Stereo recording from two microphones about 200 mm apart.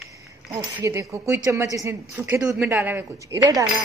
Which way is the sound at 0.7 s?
15° right (ahead or behind).